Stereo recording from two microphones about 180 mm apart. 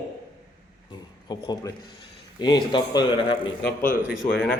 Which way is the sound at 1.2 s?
20° left (ahead or behind).